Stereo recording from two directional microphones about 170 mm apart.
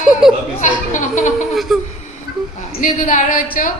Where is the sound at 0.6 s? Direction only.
45° left (ahead or behind).